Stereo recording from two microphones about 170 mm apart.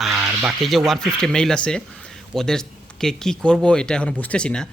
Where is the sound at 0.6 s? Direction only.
Centre (ahead or behind).